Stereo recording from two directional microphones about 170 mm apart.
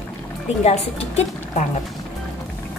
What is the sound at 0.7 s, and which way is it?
A woman's voice, 40° left (ahead or behind).